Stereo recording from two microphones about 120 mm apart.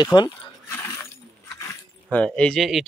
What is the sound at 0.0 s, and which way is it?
Speech, 40° left (ahead or behind).